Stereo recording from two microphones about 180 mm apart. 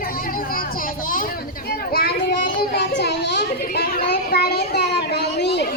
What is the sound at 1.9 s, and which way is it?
Children playing, 55° left (ahead or behind).